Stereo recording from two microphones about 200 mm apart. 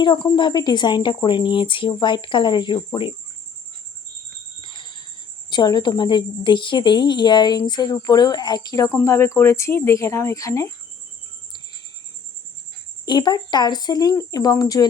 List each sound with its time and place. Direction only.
0.0 s a woman's voice: 25° left (ahead or behind)
4.6 s jingle bell: 25° left (ahead or behind)
5.5 s a woman's voice: 20° left (ahead or behind)
13.1 s a woman's voice: 20° left (ahead or behind)